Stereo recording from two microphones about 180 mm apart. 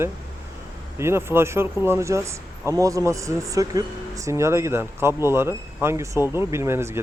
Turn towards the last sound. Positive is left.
turn(degrees=-15)  # may be behind; listen again after turning